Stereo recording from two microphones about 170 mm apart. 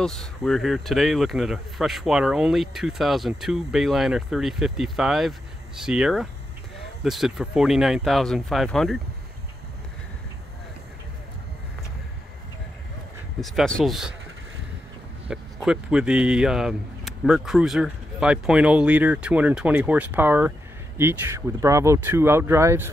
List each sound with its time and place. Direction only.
0.0 s speech: centre (ahead or behind)
13.4 s speech: 5° left (ahead or behind)
15.2 s speech: 5° right (ahead or behind)